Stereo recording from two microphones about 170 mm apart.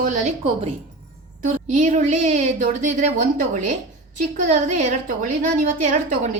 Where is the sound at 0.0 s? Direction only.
45° right (ahead or behind).